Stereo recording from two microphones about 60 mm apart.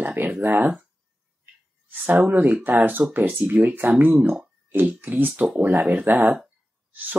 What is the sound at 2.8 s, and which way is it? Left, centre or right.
Speech, right.